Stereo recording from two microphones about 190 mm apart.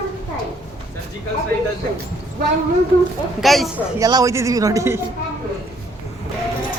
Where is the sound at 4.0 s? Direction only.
20° right (ahead or behind).